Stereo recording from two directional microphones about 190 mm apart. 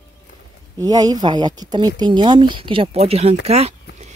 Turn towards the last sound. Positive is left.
turn(degrees=-35)  # may be behind; listen again after turning